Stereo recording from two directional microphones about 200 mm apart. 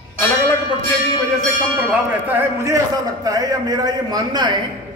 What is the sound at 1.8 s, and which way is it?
A man's voice, 10° right (ahead or behind).